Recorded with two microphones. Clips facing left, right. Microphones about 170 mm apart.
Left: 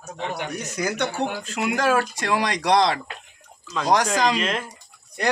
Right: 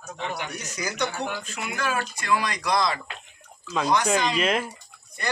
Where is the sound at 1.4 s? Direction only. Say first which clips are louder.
Left 7 dB; 80° left.